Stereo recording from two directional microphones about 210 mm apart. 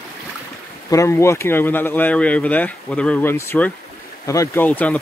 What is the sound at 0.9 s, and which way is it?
Speech, 15° left (ahead or behind).